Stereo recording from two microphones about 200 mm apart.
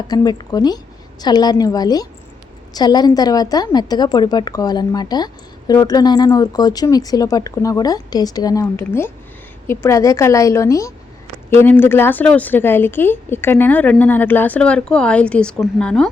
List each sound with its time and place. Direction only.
0.1 s a woman's voice: 20° left (ahead or behind); by 16.0 s 5° left (ahead or behind)